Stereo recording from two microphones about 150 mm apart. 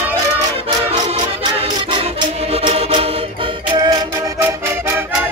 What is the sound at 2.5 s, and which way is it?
Music, 40° right (ahead or behind).